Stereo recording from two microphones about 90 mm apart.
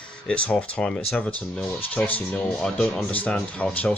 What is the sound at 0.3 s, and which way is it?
Speech, 15° left (ahead or behind).